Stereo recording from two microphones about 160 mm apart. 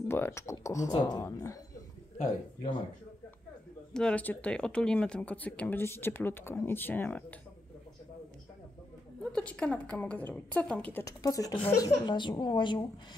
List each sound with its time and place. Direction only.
0.1 s speech: 15° left (ahead or behind)
3.9 s speech: 5° left (ahead or behind)
9.2 s speech: 5° left (ahead or behind); by 12.8 s 30° left (ahead or behind)